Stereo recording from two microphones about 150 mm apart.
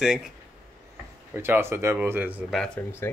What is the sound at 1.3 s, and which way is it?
Speech, 15° right (ahead or behind).